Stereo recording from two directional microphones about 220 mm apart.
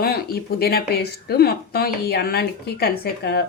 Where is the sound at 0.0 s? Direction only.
45° left (ahead or behind).